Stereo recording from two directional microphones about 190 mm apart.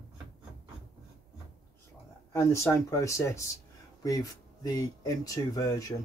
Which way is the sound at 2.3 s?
15° left (ahead or behind).